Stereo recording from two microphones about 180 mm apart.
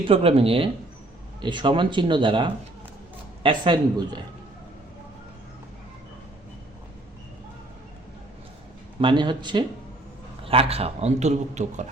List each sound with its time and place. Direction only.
0.0 s a man's voice: 30° right (ahead or behind)
9.0 s a man's voice: 25° right (ahead or behind)